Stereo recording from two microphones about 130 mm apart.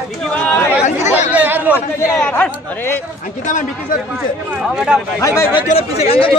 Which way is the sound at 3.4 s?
80° left.